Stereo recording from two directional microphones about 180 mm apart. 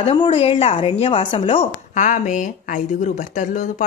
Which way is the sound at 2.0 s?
45° left (ahead or behind).